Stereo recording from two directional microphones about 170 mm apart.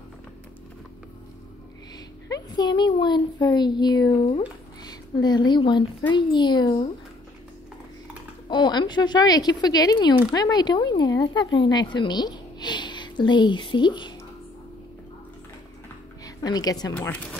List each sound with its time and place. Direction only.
2.2 s speech: 25° left (ahead or behind)
8.5 s speech: 25° left (ahead or behind)
16.3 s a woman's voice: 20° left (ahead or behind)
16.9 s speech: 10° left (ahead or behind)